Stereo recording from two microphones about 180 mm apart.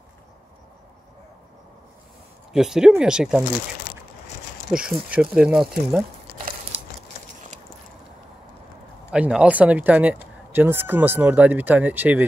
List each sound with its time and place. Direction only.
2.5 s speech: 5° right (ahead or behind)
4.6 s speech: 5° right (ahead or behind)
9.1 s speech: 5° right (ahead or behind)